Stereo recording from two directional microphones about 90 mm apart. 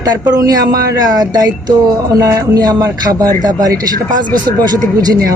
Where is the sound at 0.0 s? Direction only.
45° right (ahead or behind).